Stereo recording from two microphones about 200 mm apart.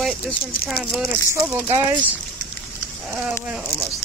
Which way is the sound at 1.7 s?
25° right (ahead or behind).